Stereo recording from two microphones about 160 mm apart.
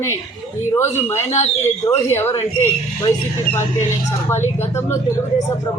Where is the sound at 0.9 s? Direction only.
15° left (ahead or behind).